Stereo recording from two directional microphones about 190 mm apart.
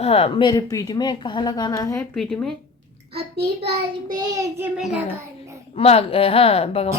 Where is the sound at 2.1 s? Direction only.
5° left (ahead or behind).